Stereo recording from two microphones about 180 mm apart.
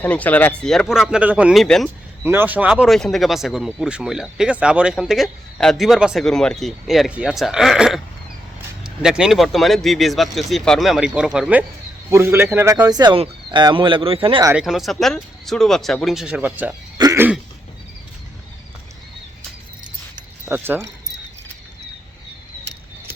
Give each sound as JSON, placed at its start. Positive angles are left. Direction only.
{"t": 0.0, "sound": "speech", "side_deg": 10}
{"t": 2.2, "sound": "a man's voice", "side_deg": -10}
{"t": 14.5, "sound": "speech", "side_deg": 0}
{"t": 17.0, "sound": "throat clearing", "side_deg": -20}
{"t": 20.4, "sound": "speech", "side_deg": -10}